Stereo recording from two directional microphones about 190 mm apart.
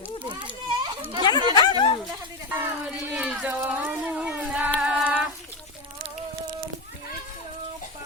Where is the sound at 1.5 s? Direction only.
25° left (ahead or behind).